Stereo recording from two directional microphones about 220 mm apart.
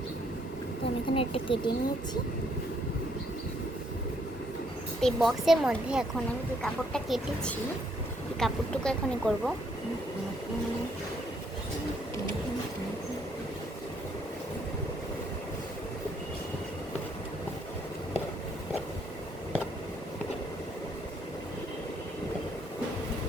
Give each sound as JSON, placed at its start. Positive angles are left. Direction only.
{"t": 1.1, "sound": "speech", "side_deg": 25}
{"t": 4.9, "sound": "speech", "side_deg": 0}